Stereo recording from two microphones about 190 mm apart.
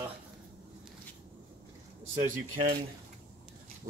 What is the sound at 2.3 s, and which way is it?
Speech, 30° right (ahead or behind).